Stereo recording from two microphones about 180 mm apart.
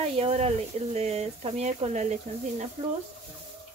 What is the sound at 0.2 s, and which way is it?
A woman's voice, 35° right (ahead or behind).